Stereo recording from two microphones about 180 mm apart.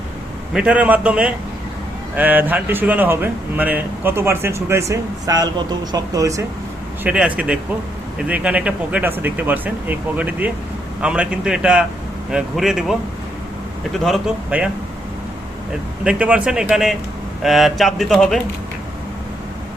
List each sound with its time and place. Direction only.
0.5 s speech: 5° right (ahead or behind)
7.0 s a man's voice: 5° right (ahead or behind)
14.0 s a man's voice: centre (ahead or behind)
16.0 s a man's voice: 5° right (ahead or behind)